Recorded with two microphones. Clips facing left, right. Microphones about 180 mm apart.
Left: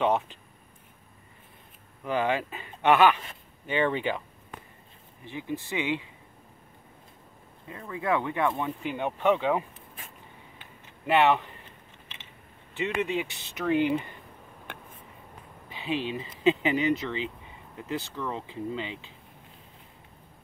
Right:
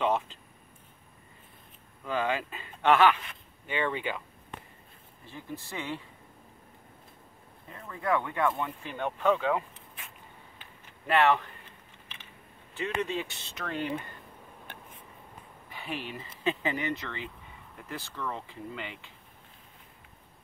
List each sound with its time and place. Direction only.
0.0 s speech: 20° left (ahead or behind)
2.0 s speech: 20° left (ahead or behind)
5.3 s speech: 75° left (ahead or behind)
5.6 s speech: 15° left (ahead or behind)
7.9 s speech: 20° left (ahead or behind)
11.1 s speech: 20° left (ahead or behind)
13.0 s speech: 15° left (ahead or behind)
15.7 s speech: 20° left (ahead or behind)